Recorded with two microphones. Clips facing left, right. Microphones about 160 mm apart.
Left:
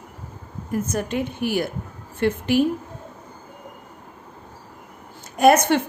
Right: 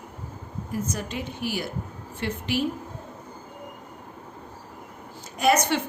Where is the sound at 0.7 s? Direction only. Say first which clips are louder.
Left 6 dB; 55° left (ahead or behind).